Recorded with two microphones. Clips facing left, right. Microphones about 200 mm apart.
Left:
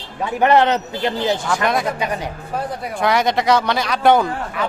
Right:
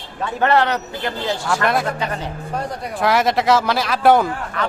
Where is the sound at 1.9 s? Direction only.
15° left (ahead or behind).